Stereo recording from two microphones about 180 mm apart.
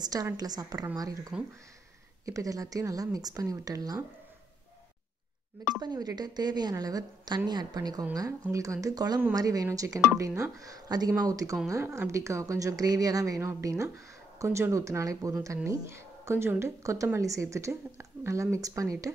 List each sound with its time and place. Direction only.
0.0 s a woman's voice: 20° right (ahead or behind)
5.8 s a woman's voice: 20° right (ahead or behind)